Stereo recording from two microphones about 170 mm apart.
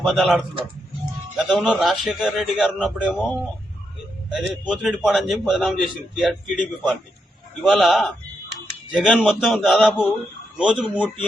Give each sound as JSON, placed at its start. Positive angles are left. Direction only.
{"t": 0.0, "sound": "a man's voice", "side_deg": 0}